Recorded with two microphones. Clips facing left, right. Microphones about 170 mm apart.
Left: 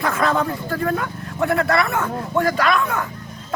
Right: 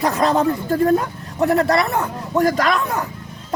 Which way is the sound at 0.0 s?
35° right (ahead or behind).